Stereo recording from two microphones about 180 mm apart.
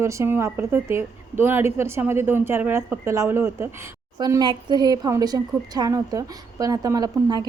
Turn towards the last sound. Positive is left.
turn(degrees=-20)  # may be behind; listen again after turning